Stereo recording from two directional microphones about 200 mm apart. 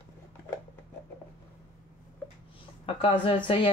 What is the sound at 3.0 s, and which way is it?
Speech, 25° left (ahead or behind).